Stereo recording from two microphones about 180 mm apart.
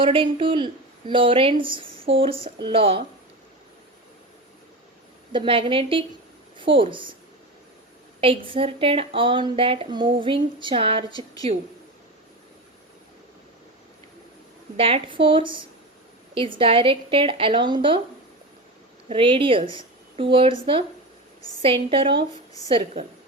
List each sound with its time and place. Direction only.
0.0 s a woman's voice: 30° right (ahead or behind)
5.3 s a woman's voice: 30° right (ahead or behind)
8.2 s a woman's voice: 30° right (ahead or behind)
14.8 s a woman's voice: 30° right (ahead or behind)
19.0 s a woman's voice: 30° right (ahead or behind)